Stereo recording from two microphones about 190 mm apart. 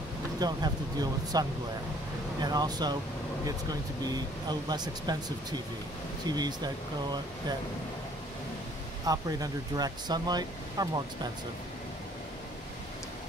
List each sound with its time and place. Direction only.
0.4 s speech: 20° right (ahead or behind)
2.4 s speech: 20° right (ahead or behind)
4.0 s speech: 20° right (ahead or behind)
9.0 s speech: 20° right (ahead or behind)